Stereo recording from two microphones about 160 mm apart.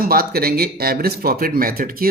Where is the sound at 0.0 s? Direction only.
65° right (ahead or behind).